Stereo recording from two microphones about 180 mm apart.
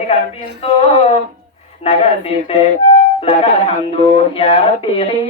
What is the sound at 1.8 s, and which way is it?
Speech, 35° left (ahead or behind).